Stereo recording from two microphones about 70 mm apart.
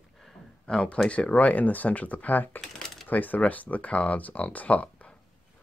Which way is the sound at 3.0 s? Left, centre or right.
Left.